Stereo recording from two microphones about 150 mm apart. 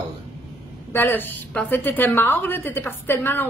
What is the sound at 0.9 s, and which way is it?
A woman's voice, 15° left (ahead or behind).